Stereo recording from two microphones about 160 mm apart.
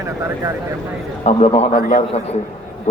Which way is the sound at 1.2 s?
40° left (ahead or behind).